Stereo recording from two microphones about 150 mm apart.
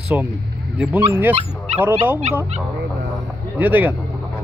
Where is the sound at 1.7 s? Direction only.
45° right (ahead or behind).